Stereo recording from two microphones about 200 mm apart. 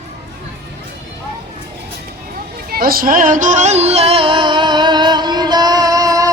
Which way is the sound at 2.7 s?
45° right (ahead or behind).